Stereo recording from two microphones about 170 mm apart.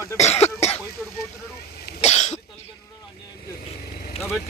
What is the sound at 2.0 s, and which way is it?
Cough, 40° left (ahead or behind).